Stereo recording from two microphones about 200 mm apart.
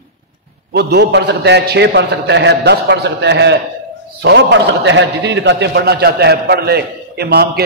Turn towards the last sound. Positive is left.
turn(degrees=-55)  # may be behind; listen again after turning